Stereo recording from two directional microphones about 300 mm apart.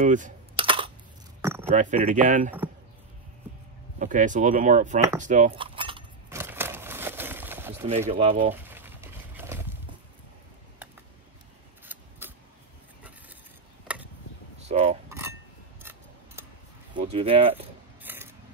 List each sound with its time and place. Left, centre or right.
0.0 s typing: right
1.4 s a sound: centre
1.7 s speech: right
4.0 s speech: right
5.2 s a sound: right; by 7.9 s centre
8.1 s speech: centre
8.5 s a sound: centre
11.8 s scissors: centre
14.7 s cutlery: right
15.0 s chink: centre
15.8 s scissors: centre
16.9 s speech: centre
18.0 s a sound: centre